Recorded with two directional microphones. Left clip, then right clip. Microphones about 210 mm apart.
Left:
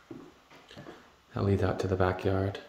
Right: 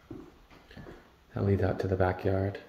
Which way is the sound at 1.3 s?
15° left (ahead or behind).